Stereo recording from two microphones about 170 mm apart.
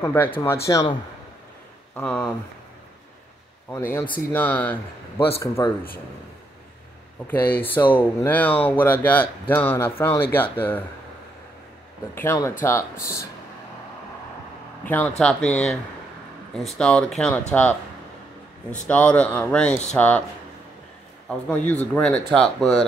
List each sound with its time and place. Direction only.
0.0 s speech: 15° left (ahead or behind)
2.0 s speech: 10° left (ahead or behind)
4.3 s speech: 10° left (ahead or behind)
7.2 s speech: 10° left (ahead or behind)
12.2 s speech: 15° left (ahead or behind)
14.9 s speech: 10° left (ahead or behind)
18.9 s speech: 10° left (ahead or behind)
21.3 s speech: 10° left (ahead or behind)